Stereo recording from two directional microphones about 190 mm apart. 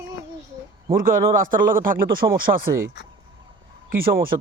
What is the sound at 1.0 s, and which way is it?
Speech, 45° right (ahead or behind).